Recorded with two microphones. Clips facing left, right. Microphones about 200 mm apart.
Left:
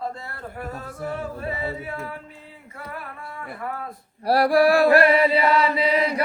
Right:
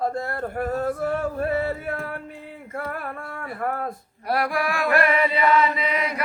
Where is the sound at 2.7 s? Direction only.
55° right (ahead or behind).